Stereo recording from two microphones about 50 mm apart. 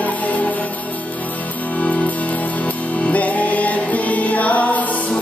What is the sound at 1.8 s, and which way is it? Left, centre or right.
Music, left.